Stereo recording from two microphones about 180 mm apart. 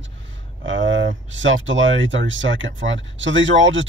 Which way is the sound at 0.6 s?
90° right.